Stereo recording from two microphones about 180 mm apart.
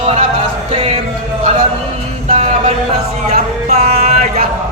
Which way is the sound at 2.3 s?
35° right (ahead or behind).